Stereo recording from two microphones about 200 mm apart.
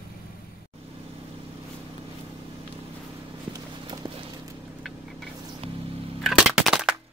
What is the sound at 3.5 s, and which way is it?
Clip-clop, 20° right (ahead or behind).